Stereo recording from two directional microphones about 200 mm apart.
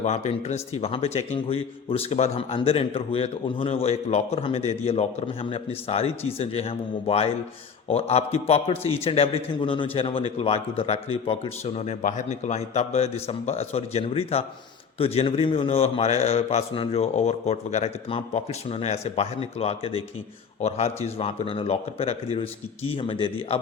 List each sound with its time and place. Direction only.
0.0 s a man's voice: 35° left (ahead or behind)